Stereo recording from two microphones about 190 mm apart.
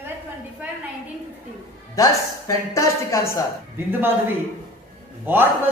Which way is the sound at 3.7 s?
10° right (ahead or behind).